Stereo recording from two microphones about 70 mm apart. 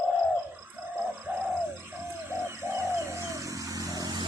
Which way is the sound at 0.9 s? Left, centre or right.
Right.